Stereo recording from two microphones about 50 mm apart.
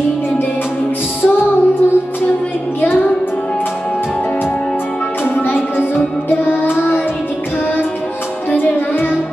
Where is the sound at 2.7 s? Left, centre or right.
Left.